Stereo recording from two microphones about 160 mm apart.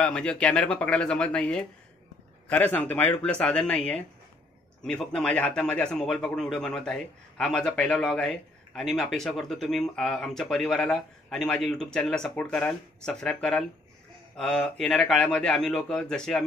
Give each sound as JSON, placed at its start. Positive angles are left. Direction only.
{"t": 0.0, "sound": "a man's voice", "side_deg": 5}